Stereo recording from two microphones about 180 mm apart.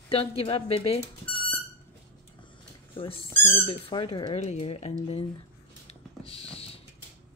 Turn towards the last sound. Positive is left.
turn(degrees=35)  # may be behind; listen again after turning